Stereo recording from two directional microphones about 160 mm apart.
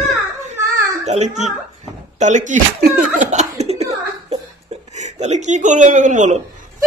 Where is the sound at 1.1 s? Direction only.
45° right (ahead or behind).